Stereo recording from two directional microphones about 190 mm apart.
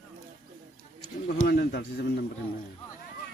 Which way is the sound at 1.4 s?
55° left (ahead or behind).